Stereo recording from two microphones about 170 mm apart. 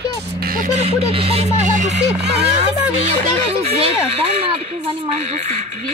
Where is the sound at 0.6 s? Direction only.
40° right (ahead or behind).